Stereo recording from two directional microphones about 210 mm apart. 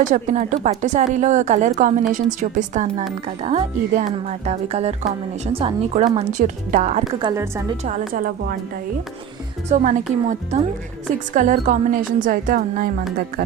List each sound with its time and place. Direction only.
0.0 s a woman's voice: 35° right (ahead or behind)
7.2 s a woman's voice: 15° right (ahead or behind)
7.9 s a woman's voice: 40° right (ahead or behind)
9.6 s a woman's voice: 35° right (ahead or behind)
11.3 s a woman's voice: 35° right (ahead or behind)